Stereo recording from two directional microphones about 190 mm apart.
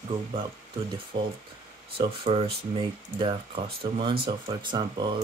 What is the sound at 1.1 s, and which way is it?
Speech, 60° right (ahead or behind).